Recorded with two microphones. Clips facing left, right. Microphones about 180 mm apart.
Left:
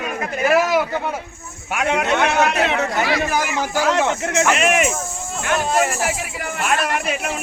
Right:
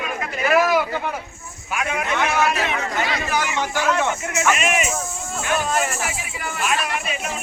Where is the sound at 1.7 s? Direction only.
70° left (ahead or behind).